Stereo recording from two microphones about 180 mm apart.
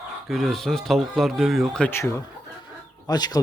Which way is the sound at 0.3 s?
Centre (ahead or behind).